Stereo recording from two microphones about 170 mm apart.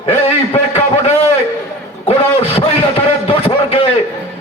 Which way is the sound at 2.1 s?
35° left (ahead or behind).